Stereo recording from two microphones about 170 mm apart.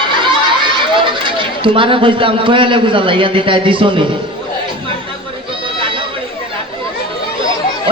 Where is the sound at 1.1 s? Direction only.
30° right (ahead or behind).